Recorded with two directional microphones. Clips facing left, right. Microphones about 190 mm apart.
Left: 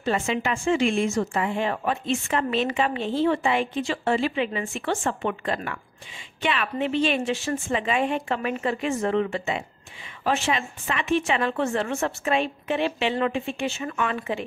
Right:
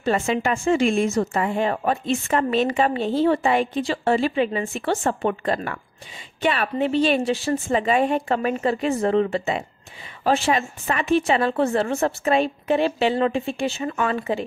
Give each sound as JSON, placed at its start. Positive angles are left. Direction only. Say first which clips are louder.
{"t": 0.0, "sound": "speech", "louder": "right 3 dB", "side_deg": -45}